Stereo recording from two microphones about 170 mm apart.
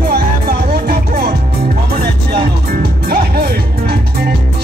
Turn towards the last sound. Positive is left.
turn(degrees=-65)  # may be behind; listen again after turning